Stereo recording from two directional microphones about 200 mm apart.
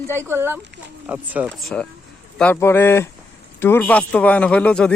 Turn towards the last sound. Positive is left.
turn(degrees=5)  # may be behind; listen again after turning